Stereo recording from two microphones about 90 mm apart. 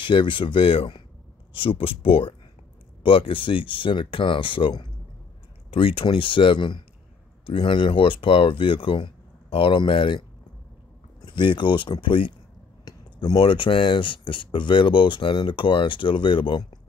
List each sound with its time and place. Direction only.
0.0 s speech: 65° left (ahead or behind)
1.5 s speech: 90° left
3.0 s speech: 75° left (ahead or behind)
7.4 s speech: 75° left (ahead or behind)
11.1 s speech: 60° left (ahead or behind)
12.8 s a sound: 50° left (ahead or behind)
13.4 s speech: 75° left (ahead or behind)